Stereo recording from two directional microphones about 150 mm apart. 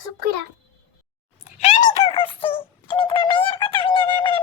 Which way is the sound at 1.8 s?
50° left (ahead or behind).